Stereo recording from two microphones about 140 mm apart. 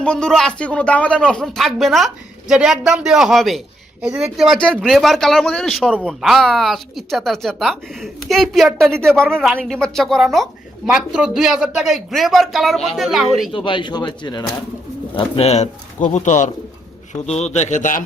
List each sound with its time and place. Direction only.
0.0 s speech: 5° left (ahead or behind)
13.5 s speech: 35° left (ahead or behind)
15.1 s speech: 45° left (ahead or behind)
17.2 s speech: 50° left (ahead or behind)